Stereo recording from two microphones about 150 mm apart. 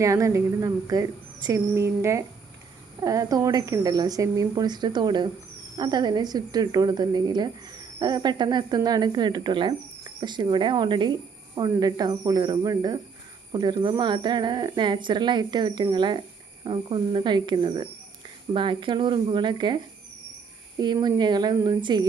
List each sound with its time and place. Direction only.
0.0 s a woman's voice: 20° right (ahead or behind)